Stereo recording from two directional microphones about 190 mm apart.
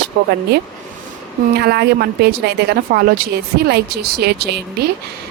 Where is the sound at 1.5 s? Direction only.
60° right (ahead or behind).